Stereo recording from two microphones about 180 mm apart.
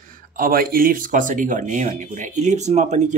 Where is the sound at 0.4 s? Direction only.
55° right (ahead or behind).